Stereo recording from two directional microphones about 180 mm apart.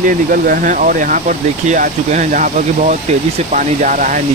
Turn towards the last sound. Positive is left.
turn(degrees=-45)  # may be behind; listen again after turning